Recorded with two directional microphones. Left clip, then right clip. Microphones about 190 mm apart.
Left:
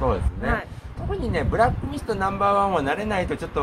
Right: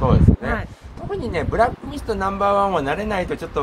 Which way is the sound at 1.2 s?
15° right (ahead or behind).